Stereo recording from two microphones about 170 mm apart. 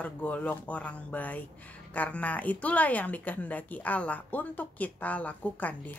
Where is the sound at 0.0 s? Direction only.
10° left (ahead or behind).